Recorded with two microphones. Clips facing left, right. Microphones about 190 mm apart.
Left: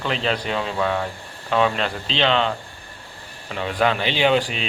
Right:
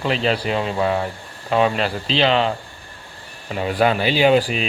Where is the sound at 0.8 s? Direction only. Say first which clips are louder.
Right 2 dB; 25° right (ahead or behind).